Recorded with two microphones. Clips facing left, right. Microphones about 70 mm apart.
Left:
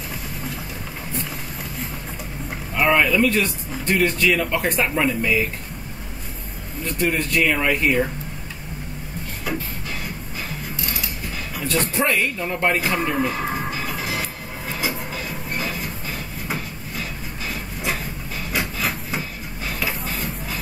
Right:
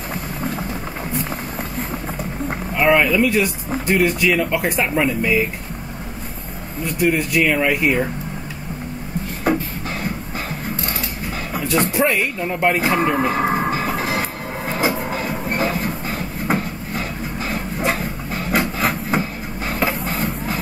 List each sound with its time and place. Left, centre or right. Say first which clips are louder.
0.1 s vehicle: right 8 dB; right
2.7 s speech: right 2 dB; centre
6.8 s speech: right 4 dB; centre
9.5 s beatboxing: right 8 dB; right
11.6 s speech: right 4 dB; centre
13.1 s music: right 5 dB; right
16.4 s a sound: right 9 dB; right
17.5 s wood: right 5 dB; right
20.1 s music: right 6 dB; right